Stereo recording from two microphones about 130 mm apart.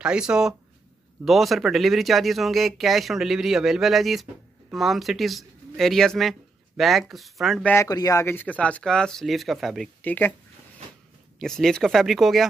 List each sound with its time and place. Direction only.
0.0 s speech: 5° right (ahead or behind)
7.6 s speech: 20° left (ahead or behind); by 9.8 s centre (ahead or behind)
10.0 s speech: 15° left (ahead or behind)
11.3 s speech: 5° left (ahead or behind)